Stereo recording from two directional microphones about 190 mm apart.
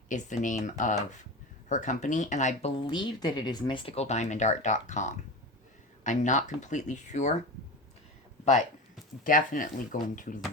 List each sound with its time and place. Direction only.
0.1 s speech: 40° left (ahead or behind)
9.2 s speech: 45° left (ahead or behind)